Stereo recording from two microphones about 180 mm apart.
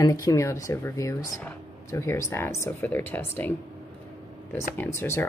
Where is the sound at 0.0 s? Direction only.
20° left (ahead or behind).